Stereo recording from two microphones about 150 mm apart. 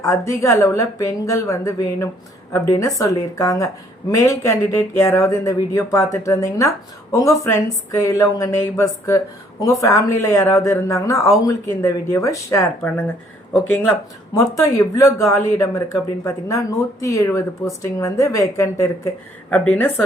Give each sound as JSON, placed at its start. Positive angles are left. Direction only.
{"t": 0.0, "sound": "a woman's voice", "side_deg": 20}
{"t": 14.3, "sound": "speech", "side_deg": 20}
{"t": 19.5, "sound": "a woman's voice", "side_deg": 10}